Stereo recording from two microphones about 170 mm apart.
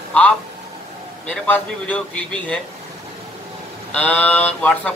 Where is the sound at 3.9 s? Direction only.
10° left (ahead or behind).